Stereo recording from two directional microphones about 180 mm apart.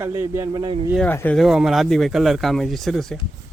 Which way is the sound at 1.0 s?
10° left (ahead or behind).